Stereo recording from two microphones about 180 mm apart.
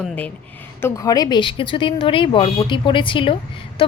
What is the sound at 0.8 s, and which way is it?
Speech, 20° left (ahead or behind).